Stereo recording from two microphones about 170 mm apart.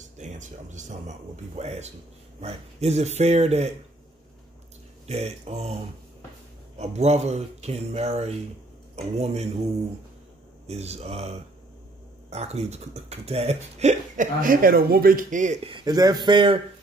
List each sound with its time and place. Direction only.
0.0 s speech: 45° right (ahead or behind)
5.0 s speech: 40° right (ahead or behind)
10.7 s speech: 40° right (ahead or behind)
15.7 s speech: 25° right (ahead or behind)